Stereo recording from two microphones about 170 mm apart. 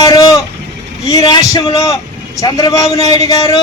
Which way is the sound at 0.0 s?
20° left (ahead or behind).